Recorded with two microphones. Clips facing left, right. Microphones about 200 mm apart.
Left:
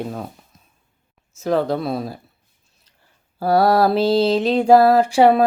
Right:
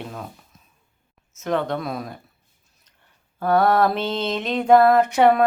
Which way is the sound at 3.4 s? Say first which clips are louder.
Left 2 dB; 35° left (ahead or behind).